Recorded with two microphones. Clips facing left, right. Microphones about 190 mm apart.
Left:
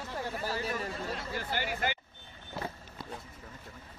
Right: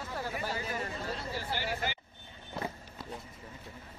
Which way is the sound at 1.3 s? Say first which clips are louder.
Left 1 dB; 50° left (ahead or behind).